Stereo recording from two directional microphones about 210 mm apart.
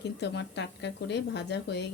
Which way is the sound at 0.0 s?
55° left (ahead or behind).